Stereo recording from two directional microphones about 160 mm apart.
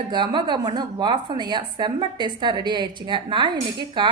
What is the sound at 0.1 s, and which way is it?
A woman's voice, 30° right (ahead or behind).